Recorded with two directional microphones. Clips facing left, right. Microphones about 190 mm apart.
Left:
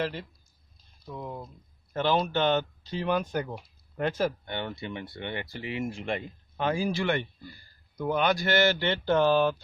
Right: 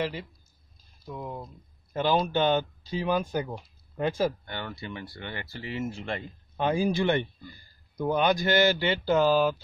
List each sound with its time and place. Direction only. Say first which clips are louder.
0.0 s speech: even; 5° right (ahead or behind)
4.5 s speech: left 2 dB; 20° left (ahead or behind)
6.5 s speech: right 2 dB; 20° right (ahead or behind)